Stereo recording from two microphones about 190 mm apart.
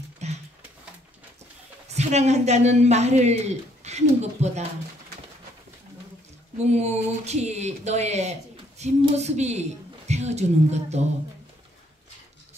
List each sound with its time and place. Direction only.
0.2 s a sound: 35° right (ahead or behind)
2.0 s speech: 35° right (ahead or behind)
6.6 s speech: 35° right (ahead or behind)